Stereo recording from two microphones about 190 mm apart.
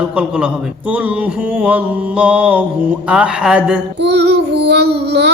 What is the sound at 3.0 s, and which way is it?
Mantra, 5° right (ahead or behind).